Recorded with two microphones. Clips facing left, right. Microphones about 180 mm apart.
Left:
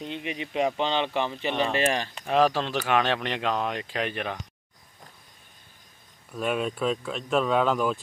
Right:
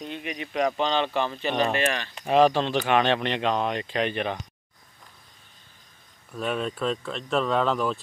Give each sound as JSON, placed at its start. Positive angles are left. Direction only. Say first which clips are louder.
{"t": 0.0, "sound": "speech", "louder": "left 1 dB", "side_deg": 25}
{"t": 1.8, "sound": "speech", "louder": "left 1 dB", "side_deg": 35}
{"t": 2.2, "sound": "speech", "louder": "right 3 dB", "side_deg": 0}
{"t": 6.3, "sound": "speech", "louder": "left 1 dB", "side_deg": 5}